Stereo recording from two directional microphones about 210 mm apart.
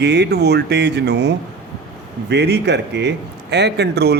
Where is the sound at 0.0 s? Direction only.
50° right (ahead or behind).